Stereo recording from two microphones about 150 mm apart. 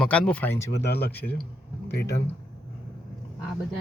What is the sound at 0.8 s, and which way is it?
Speech, 90° left.